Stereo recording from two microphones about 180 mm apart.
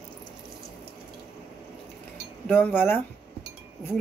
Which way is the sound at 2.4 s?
10° left (ahead or behind).